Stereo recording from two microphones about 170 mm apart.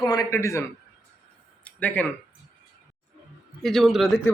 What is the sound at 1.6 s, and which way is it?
Speech, 10° left (ahead or behind).